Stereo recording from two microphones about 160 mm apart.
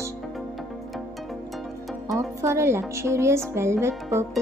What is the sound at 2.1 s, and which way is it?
A woman's voice, 15° right (ahead or behind).